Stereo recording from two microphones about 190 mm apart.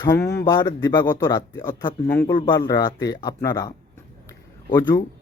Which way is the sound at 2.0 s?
10° left (ahead or behind).